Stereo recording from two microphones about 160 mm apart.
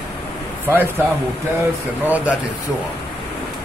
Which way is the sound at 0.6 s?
15° right (ahead or behind).